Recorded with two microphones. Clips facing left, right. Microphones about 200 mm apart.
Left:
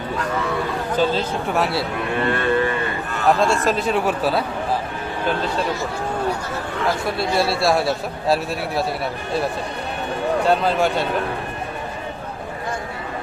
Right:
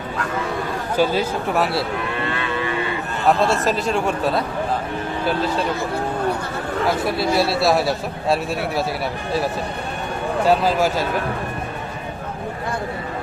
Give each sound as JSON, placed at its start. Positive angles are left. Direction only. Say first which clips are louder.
{"t": 0.9, "sound": "a man's voice", "louder": "right 2 dB", "side_deg": -10}
{"t": 2.2, "sound": "livestock", "louder": "left 5 dB", "side_deg": 50}
{"t": 3.4, "sound": "a man's voice", "louder": "even", "side_deg": 0}
{"t": 7.0, "sound": "a man's voice", "louder": "right 1 dB", "side_deg": 0}
{"t": 10.4, "sound": "a man's voice", "louder": "right 2 dB", "side_deg": -5}